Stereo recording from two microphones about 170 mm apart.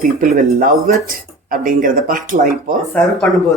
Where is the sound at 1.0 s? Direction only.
55° right (ahead or behind).